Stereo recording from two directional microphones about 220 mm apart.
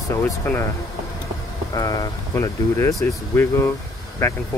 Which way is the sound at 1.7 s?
20° left (ahead or behind).